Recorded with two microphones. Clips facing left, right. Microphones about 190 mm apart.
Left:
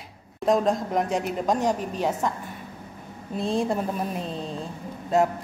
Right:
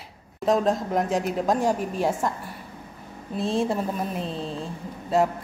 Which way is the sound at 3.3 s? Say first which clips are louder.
Even; centre (ahead or behind).